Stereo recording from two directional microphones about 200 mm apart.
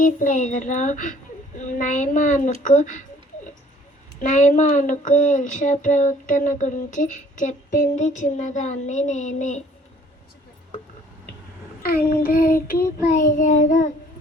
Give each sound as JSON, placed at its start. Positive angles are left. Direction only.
{"t": 0.0, "sound": "speech", "side_deg": 40}
{"t": 4.2, "sound": "speech", "side_deg": 35}
{"t": 11.8, "sound": "child singing", "side_deg": 50}